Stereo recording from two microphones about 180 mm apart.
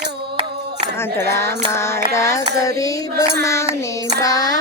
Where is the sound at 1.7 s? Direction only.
15° left (ahead or behind).